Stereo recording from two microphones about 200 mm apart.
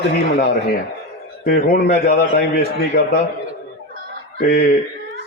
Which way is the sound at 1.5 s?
55° left (ahead or behind).